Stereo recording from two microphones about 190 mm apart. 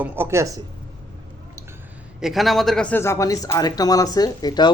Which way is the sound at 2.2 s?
Centre (ahead or behind).